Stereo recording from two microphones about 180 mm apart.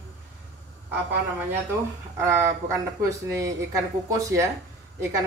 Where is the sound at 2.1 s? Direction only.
15° right (ahead or behind).